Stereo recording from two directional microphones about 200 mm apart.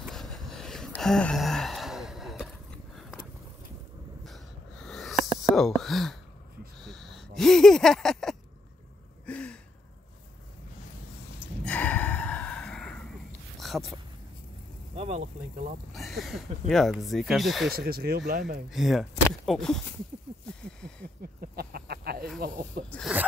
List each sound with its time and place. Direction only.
0.1 s gasp: centre (ahead or behind)
4.2 s a sound: centre (ahead or behind)
5.4 s speech: centre (ahead or behind)
6.8 s a sound: centre (ahead or behind)
9.2 s gasp: 5° left (ahead or behind)
11.6 s gasp: 10° left (ahead or behind)
13.6 s a sound: centre (ahead or behind)
15.0 s vehicle: 30° right (ahead or behind)
15.9 s speech: centre (ahead or behind)
17.7 s speech: 50° right (ahead or behind)
18.7 s speech: centre (ahead or behind)
21.4 s a sound: 50° right (ahead or behind)
22.4 s speech: 50° right (ahead or behind)
22.8 s speech: 5° left (ahead or behind)